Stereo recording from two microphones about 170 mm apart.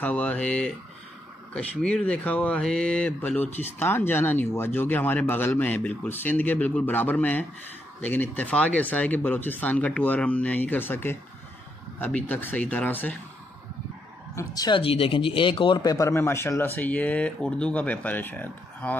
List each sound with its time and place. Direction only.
0.0 s speech: 10° left (ahead or behind)
12.3 s speech: 10° left (ahead or behind)
14.3 s speech: 20° left (ahead or behind)